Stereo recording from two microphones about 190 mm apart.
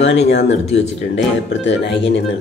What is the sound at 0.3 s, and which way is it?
Speech, 65° left (ahead or behind).